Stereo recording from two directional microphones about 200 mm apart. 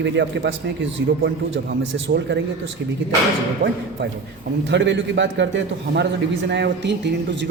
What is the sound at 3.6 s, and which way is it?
Speech, 60° right (ahead or behind).